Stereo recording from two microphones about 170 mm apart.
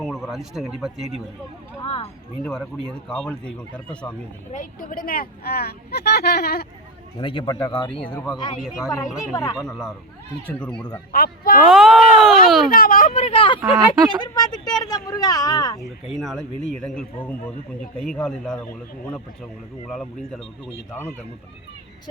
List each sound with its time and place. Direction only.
0.0 s speech: centre (ahead or behind)
1.8 s speech: 35° left (ahead or behind)
2.4 s speech: 5° left (ahead or behind)
4.5 s speech: 50° left (ahead or behind); by 6.7 s 65° left (ahead or behind)
7.2 s speech: 30° left (ahead or behind)
7.8 s speech: 30° left (ahead or behind)
8.6 s speech: 5° right (ahead or behind)
9.3 s speech: 20° left (ahead or behind)
9.6 s speech: centre (ahead or behind)
11.1 s speech: 60° left (ahead or behind)
11.6 s speech: centre (ahead or behind)
12.7 s speech: 55° left (ahead or behind)
13.1 s speech: 35° left (ahead or behind); by 15.8 s 20° left (ahead or behind)
16.2 s speech: centre (ahead or behind)